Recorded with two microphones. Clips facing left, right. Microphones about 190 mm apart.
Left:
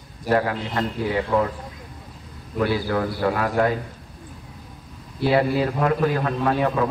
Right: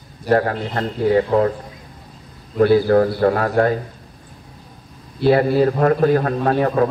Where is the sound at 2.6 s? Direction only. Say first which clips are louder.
Right 9 dB; 45° right (ahead or behind).